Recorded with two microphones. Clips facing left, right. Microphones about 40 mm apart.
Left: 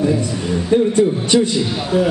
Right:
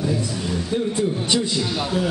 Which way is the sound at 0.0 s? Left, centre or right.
Left.